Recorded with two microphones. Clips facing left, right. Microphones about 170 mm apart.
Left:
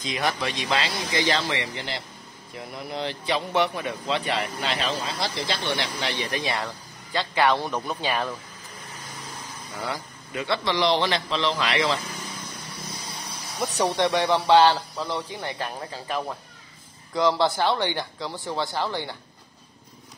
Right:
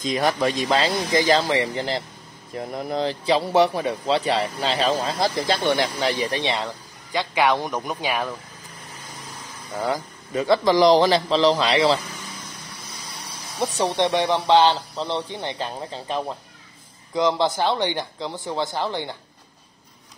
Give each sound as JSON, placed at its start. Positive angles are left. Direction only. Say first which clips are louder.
{"t": 0.0, "sound": "speech", "louder": "right 6 dB", "side_deg": -45}
{"t": 6.5, "sound": "speech", "louder": "right 3 dB", "side_deg": -15}
{"t": 9.8, "sound": "speech", "louder": "right 7 dB", "side_deg": -40}
{"t": 13.6, "sound": "speech", "louder": "right 2 dB", "side_deg": -25}